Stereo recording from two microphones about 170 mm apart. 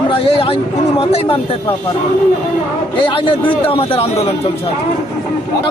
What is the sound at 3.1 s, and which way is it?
A man's voice, 30° left (ahead or behind).